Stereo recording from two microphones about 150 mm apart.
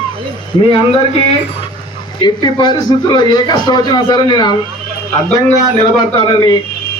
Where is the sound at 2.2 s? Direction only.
30° left (ahead or behind).